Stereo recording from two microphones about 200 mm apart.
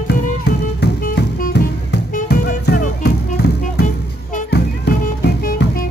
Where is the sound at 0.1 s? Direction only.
55° left (ahead or behind).